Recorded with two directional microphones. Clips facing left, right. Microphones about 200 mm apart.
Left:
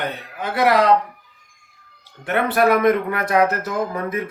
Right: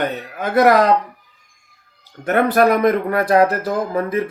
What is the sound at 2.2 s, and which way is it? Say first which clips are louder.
Speech: right 3 dB; 40° right (ahead or behind).